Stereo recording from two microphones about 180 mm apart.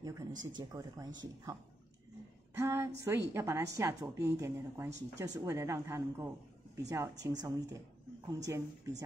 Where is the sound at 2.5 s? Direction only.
15° right (ahead or behind).